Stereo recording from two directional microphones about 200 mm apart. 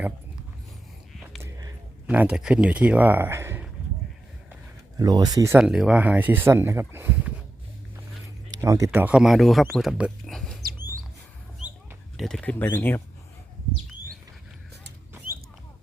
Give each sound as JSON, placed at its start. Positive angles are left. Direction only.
{"t": 1.4, "sound": "speech", "side_deg": -15}
{"t": 4.9, "sound": "speech", "side_deg": -20}
{"t": 5.5, "sound": "speech", "side_deg": 0}
{"t": 8.4, "sound": "speech", "side_deg": -15}
{"t": 12.1, "sound": "speech", "side_deg": 0}